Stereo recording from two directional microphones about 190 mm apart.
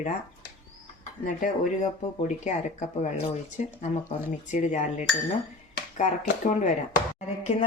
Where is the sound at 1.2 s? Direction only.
40° left (ahead or behind).